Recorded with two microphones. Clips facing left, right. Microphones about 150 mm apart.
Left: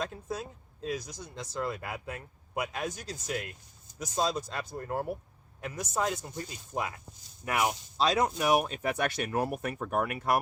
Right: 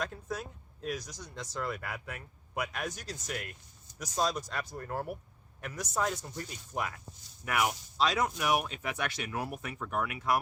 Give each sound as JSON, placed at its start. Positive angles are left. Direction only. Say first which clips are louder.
{"t": 0.0, "sound": "speech", "louder": "left 1 dB", "side_deg": 25}